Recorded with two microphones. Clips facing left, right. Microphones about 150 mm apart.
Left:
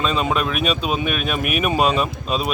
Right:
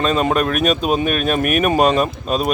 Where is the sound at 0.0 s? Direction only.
45° right (ahead or behind).